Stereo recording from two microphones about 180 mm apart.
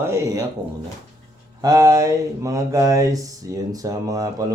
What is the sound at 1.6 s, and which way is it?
Speech, 20° right (ahead or behind).